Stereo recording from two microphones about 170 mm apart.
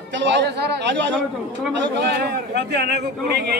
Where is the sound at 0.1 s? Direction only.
90° right.